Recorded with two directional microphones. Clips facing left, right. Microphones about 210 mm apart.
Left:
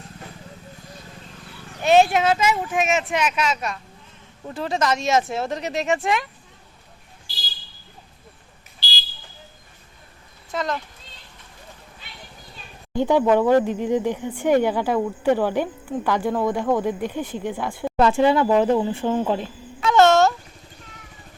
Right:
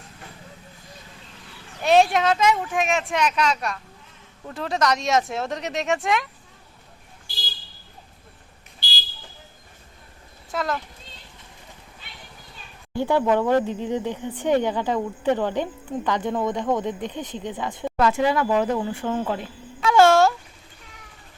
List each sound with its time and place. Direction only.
1.8 s speech: centre (ahead or behind)
10.5 s a child's voice: centre (ahead or behind)
12.9 s speech: 15° left (ahead or behind)
17.9 s speech: 30° left (ahead or behind)
19.8 s speech: 10° right (ahead or behind)